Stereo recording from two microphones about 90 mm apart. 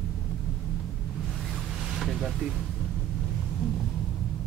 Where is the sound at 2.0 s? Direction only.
Centre (ahead or behind).